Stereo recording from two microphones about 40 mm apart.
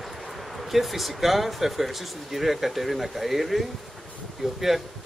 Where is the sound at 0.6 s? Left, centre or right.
Centre.